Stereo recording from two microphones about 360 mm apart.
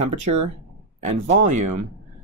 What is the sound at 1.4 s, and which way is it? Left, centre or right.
Speech, right.